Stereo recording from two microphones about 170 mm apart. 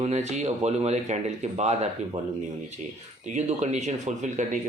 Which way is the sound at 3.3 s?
45° right (ahead or behind).